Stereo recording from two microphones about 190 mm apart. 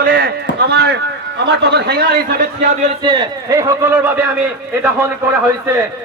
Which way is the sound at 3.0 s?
20° right (ahead or behind).